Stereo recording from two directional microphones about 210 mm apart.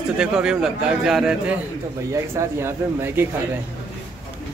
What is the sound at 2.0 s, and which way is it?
Speech, 15° right (ahead or behind).